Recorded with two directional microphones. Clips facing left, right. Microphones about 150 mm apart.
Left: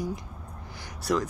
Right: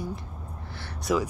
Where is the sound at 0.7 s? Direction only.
15° left (ahead or behind).